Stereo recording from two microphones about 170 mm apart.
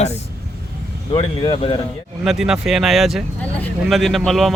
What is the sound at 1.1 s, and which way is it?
Speech, 30° left (ahead or behind).